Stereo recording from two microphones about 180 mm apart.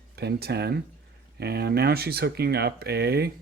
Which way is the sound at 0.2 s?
65° right (ahead or behind).